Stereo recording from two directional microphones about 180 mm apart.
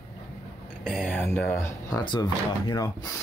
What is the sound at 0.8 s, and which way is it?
Speech, 5° left (ahead or behind).